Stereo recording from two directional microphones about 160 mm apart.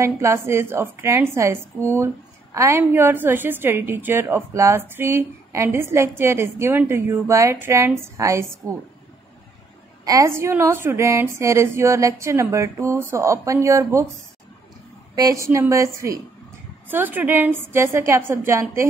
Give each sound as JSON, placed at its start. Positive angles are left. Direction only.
{"t": 0.0, "sound": "a woman's voice", "side_deg": -20}
{"t": 10.0, "sound": "a woman's voice", "side_deg": -20}
{"t": 15.1, "sound": "a woman's voice", "side_deg": -20}